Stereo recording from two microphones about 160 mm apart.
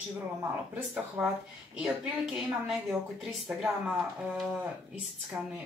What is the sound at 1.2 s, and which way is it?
Speech, 5° right (ahead or behind).